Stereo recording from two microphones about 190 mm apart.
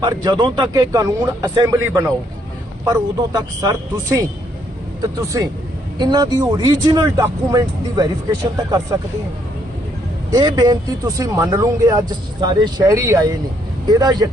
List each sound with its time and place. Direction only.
0.0 s speech: 25° right (ahead or behind)
6.0 s speech: 20° right (ahead or behind)
10.3 s speech: 20° right (ahead or behind)